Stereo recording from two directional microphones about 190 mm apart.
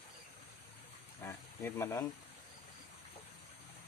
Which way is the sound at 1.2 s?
10° left (ahead or behind).